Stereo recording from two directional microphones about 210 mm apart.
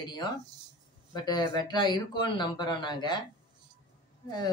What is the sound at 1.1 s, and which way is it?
Speech, 20° left (ahead or behind).